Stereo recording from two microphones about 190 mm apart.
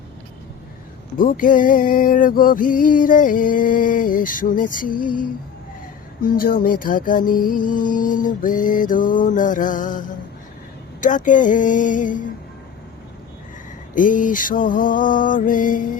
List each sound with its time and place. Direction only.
1.2 s music: 45° left (ahead or behind)
11.0 s music: 40° left (ahead or behind)
13.9 s music: 45° left (ahead or behind)